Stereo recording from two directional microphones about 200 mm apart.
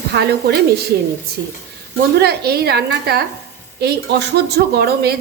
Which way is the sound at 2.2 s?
50° right (ahead or behind).